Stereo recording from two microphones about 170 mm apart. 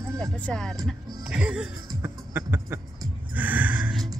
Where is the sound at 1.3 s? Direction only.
5° right (ahead or behind).